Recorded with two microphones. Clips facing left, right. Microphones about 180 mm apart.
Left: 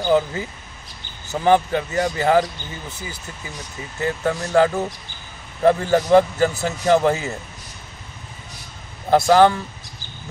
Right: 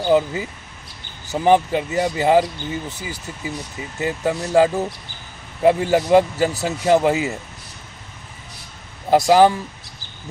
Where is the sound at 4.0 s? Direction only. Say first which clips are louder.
Even; 10° right (ahead or behind).